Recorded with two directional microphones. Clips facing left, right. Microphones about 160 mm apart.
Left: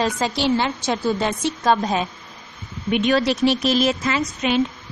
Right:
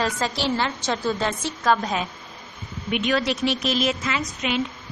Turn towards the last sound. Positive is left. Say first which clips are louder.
# left 5 dB
turn(degrees=35)  # may be behind; listen again after turning